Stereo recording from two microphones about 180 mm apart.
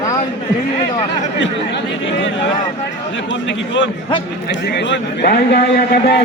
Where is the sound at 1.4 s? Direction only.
90° left.